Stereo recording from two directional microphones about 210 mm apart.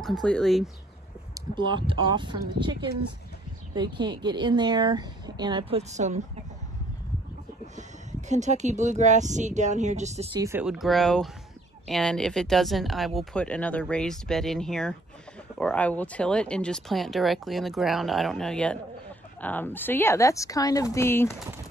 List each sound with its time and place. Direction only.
0.0 s speech: centre (ahead or behind)
1.3 s a woman's voice: 20° right (ahead or behind)
7.6 s speech: 35° right (ahead or behind)
10.4 s a woman's voice: 10° right (ahead or behind); by 21.4 s 10° left (ahead or behind)